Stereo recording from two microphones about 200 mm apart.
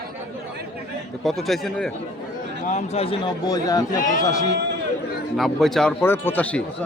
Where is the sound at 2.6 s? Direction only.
35° left (ahead or behind); by 4.5 s 15° left (ahead or behind).